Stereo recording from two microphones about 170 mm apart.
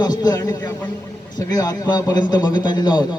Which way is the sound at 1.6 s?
25° left (ahead or behind).